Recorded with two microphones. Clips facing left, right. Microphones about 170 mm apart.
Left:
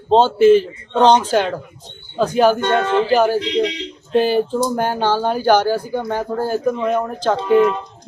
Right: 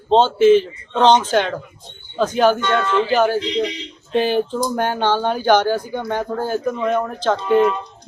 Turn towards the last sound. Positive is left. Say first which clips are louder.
# left 2 dB
turn(degrees=10)  # may be behind; listen again after turning